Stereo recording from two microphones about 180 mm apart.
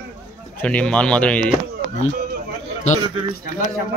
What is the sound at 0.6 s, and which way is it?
Speech, 5° left (ahead or behind).